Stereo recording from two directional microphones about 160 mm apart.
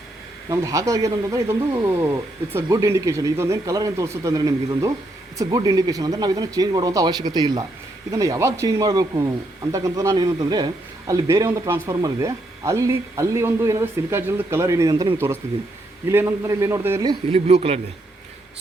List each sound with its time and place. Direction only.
0.4 s a man's voice: 20° right (ahead or behind)
17.3 s speech: 40° right (ahead or behind)